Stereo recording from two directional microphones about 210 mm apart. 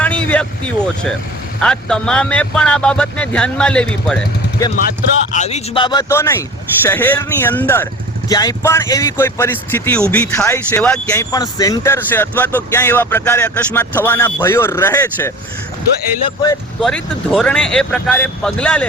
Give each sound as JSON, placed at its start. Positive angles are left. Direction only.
{"t": 0.0, "sound": "speech", "side_deg": 5}
{"t": 4.6, "sound": "speech", "side_deg": 15}
{"t": 5.3, "sound": "speech", "side_deg": 30}
{"t": 16.8, "sound": "speech", "side_deg": 5}